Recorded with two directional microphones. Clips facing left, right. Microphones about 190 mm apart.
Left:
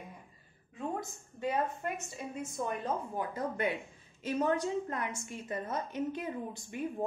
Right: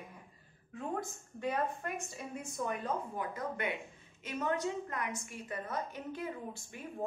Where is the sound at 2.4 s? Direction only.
30° left (ahead or behind).